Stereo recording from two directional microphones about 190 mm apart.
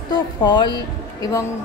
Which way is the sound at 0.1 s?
20° left (ahead or behind).